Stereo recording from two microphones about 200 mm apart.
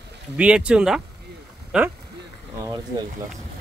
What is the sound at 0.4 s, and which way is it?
Speech, 5° right (ahead or behind).